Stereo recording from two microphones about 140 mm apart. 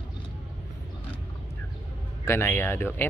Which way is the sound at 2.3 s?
15° left (ahead or behind).